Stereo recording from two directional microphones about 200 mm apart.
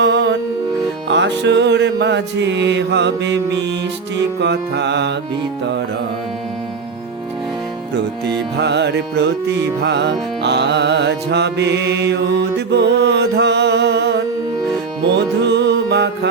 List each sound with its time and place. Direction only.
0.0 s music: 60° right (ahead or behind)
8.5 s music: 60° right (ahead or behind)